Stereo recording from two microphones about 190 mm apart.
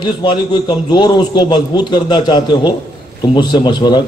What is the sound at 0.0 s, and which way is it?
A man's voice, 25° left (ahead or behind).